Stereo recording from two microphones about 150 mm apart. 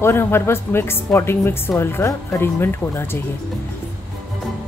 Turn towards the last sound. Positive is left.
turn(degrees=15)  # may be behind; listen again after turning